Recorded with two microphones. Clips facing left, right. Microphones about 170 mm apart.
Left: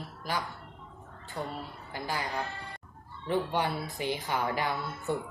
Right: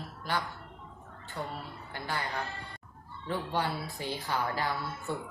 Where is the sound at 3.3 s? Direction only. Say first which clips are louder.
Left 3 dB; 20° left (ahead or behind).